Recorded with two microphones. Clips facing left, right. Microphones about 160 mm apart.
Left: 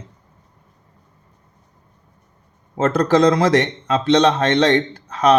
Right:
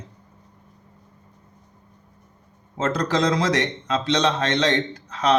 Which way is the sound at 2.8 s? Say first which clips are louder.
Left 7 dB; 55° left (ahead or behind).